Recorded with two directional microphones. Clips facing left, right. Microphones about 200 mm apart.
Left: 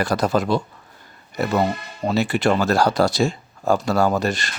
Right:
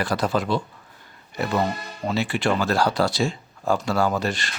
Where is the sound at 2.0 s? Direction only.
40° left (ahead or behind).